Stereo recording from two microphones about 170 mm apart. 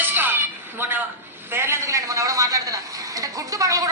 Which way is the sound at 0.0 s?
10° right (ahead or behind).